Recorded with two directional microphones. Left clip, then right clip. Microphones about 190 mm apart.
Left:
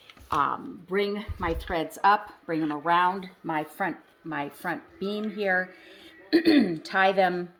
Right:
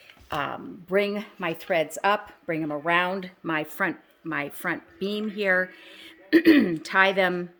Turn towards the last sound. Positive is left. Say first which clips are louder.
# right 1 dB
turn(degrees=-30)  # may be behind; listen again after turning